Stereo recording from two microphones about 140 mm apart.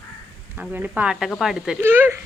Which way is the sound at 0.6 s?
10° right (ahead or behind).